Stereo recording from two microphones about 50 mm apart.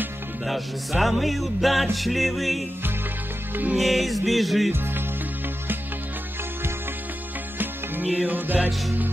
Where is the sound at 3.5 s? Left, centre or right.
Right.